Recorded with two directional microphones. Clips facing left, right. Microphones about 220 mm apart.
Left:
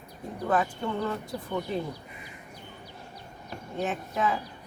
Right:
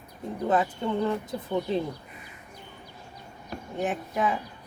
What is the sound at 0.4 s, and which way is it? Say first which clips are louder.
Speech: right 2 dB; 20° right (ahead or behind).